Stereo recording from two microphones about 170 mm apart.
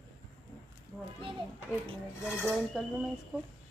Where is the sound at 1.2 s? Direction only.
30° right (ahead or behind).